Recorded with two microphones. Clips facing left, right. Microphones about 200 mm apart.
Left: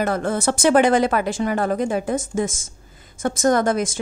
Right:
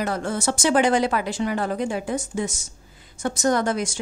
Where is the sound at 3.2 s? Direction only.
50° left (ahead or behind).